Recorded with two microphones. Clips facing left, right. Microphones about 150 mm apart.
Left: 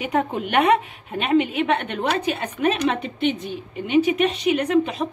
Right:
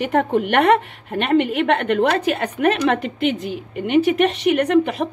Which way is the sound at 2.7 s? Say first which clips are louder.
Right 3 dB; 80° right.